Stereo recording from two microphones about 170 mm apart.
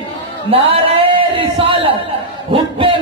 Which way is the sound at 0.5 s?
35° right (ahead or behind).